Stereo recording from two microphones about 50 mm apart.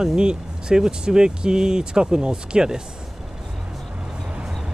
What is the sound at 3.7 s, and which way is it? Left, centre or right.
Music, centre.